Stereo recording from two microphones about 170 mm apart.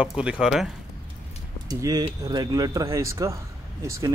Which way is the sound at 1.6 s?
25° right (ahead or behind).